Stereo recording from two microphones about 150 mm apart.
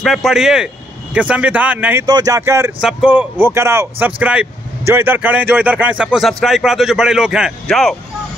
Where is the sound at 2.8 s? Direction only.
5° right (ahead or behind).